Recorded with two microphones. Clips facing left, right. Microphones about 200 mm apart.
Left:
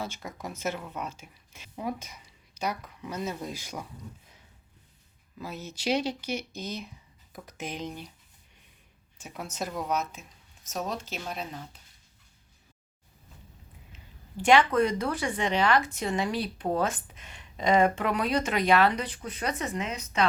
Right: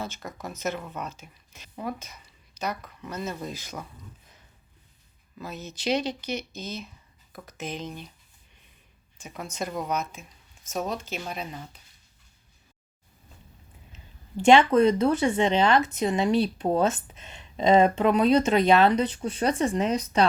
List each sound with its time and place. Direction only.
0.0 s speech: 10° left (ahead or behind)
5.4 s speech: 10° left (ahead or behind)
9.1 s speech: 5° left (ahead or behind)
14.4 s speech: 25° right (ahead or behind)